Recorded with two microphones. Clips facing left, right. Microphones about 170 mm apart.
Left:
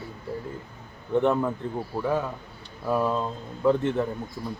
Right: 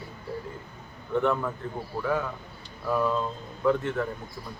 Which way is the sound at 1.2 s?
20° left (ahead or behind).